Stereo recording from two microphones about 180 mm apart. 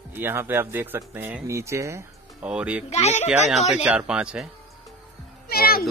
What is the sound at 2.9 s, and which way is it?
Speech, 35° left (ahead or behind).